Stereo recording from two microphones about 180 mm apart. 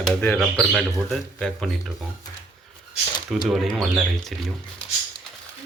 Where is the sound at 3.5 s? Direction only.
Centre (ahead or behind).